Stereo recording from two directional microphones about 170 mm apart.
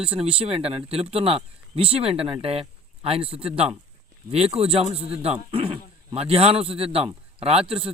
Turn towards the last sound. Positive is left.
turn(degrees=-35)  # may be behind; listen again after turning